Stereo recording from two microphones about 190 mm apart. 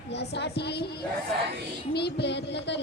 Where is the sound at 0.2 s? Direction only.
60° left (ahead or behind).